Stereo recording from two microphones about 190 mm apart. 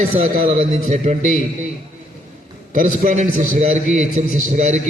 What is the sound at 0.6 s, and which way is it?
Speech, 40° right (ahead or behind).